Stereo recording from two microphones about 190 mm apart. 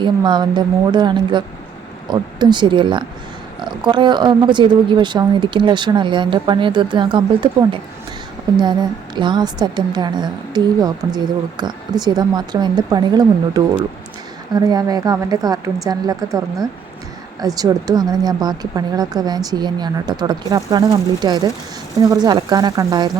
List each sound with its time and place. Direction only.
0.0 s a woman's voice: 25° right (ahead or behind)